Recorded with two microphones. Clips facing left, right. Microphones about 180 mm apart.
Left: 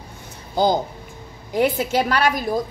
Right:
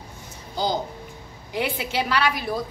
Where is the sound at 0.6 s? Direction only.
55° left (ahead or behind).